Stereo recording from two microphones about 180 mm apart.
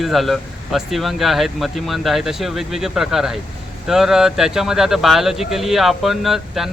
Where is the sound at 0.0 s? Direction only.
Centre (ahead or behind).